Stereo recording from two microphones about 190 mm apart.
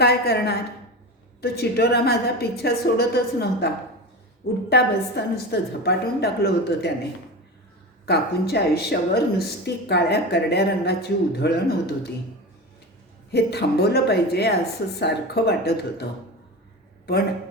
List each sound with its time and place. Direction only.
0.0 s a woman's voice: 60° left (ahead or behind)
4.7 s a woman's voice: 55° left (ahead or behind)
8.0 s a woman's voice: 60° left (ahead or behind)
13.3 s a woman's voice: 60° left (ahead or behind)